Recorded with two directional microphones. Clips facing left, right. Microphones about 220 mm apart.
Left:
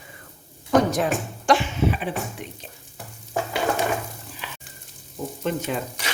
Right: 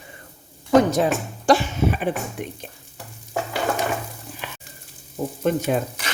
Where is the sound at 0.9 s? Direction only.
30° right (ahead or behind); by 2.4 s 50° right (ahead or behind).